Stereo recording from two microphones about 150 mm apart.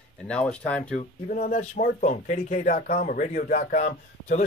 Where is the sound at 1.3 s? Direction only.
65° left (ahead or behind).